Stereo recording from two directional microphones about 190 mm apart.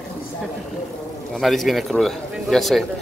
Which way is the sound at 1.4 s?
Centre (ahead or behind).